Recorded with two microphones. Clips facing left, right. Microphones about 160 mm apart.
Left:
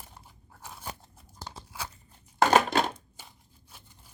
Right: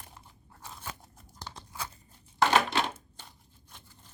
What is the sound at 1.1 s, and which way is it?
Crunch, 5° left (ahead or behind).